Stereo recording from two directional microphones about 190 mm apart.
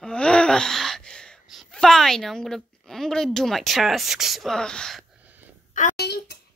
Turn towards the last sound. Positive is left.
turn(degrees=60)  # may be behind; listen again after turning